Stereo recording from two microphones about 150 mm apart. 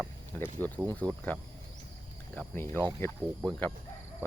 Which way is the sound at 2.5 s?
15° left (ahead or behind).